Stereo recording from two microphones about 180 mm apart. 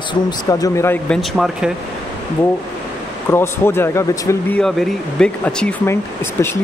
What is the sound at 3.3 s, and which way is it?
Speech, 15° left (ahead or behind).